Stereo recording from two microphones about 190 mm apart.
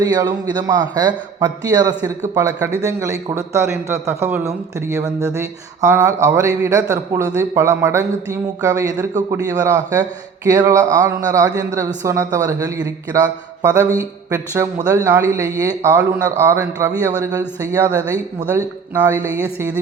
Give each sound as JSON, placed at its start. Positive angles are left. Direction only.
{"t": 0.0, "sound": "a man's voice", "side_deg": -20}
{"t": 14.3, "sound": "speech", "side_deg": -15}
{"t": 19.0, "sound": "speech", "side_deg": -15}